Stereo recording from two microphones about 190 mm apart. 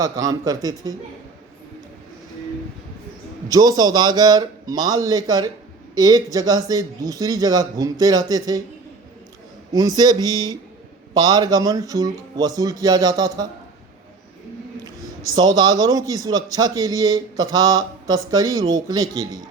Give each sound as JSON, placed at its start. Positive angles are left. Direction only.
{"t": 0.0, "sound": "speech", "side_deg": -20}
{"t": 3.5, "sound": "speech", "side_deg": -20}
{"t": 9.7, "sound": "speech", "side_deg": -20}
{"t": 15.4, "sound": "speech", "side_deg": -20}